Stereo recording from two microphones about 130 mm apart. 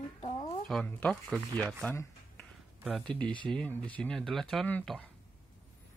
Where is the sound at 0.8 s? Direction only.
10° left (ahead or behind).